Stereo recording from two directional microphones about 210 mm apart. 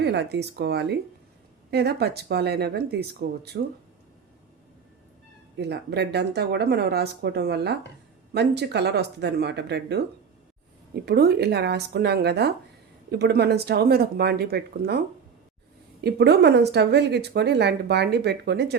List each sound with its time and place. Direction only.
0.0 s a woman's voice: 55° right (ahead or behind)
5.5 s a woman's voice: 55° right (ahead or behind)
11.0 s a woman's voice: 50° right (ahead or behind)
16.0 s a woman's voice: 50° right (ahead or behind)